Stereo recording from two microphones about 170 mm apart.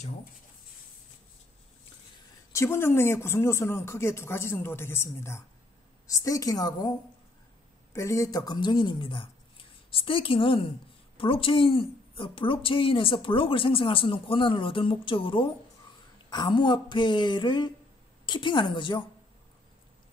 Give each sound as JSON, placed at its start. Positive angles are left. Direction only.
{"t": 2.5, "sound": "speech", "side_deg": 15}
{"t": 7.9, "sound": "a woman's voice", "side_deg": 15}